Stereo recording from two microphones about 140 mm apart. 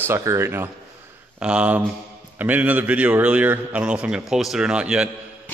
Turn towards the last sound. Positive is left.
turn(degrees=-5)  # may be behind; listen again after turning